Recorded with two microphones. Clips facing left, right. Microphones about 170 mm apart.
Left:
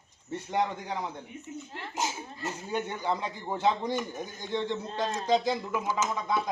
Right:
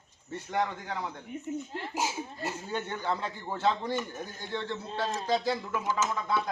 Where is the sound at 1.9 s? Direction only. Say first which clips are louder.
Even; 10° right (ahead or behind).